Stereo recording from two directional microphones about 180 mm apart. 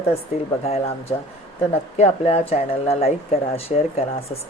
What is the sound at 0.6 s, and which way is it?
Speech, 35° left (ahead or behind).